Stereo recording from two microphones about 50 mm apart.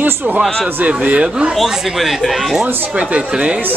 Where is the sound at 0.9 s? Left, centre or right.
Right.